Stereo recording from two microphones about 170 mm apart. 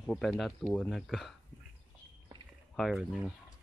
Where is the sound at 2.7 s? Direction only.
Centre (ahead or behind).